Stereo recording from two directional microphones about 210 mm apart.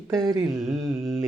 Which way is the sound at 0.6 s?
Centre (ahead or behind).